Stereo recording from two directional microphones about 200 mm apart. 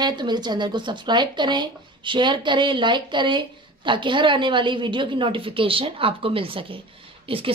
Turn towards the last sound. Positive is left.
turn(degrees=-25)  # may be behind; listen again after turning